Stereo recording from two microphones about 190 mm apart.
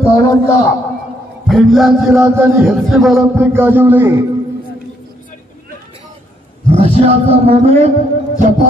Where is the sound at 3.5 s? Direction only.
10° right (ahead or behind).